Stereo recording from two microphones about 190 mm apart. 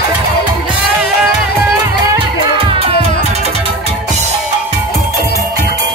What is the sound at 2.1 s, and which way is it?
Music, 25° right (ahead or behind).